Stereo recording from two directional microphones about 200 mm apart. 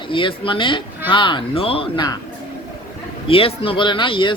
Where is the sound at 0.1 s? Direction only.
25° left (ahead or behind).